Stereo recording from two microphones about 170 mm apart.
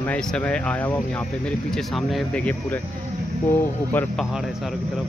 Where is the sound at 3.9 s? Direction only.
10° left (ahead or behind).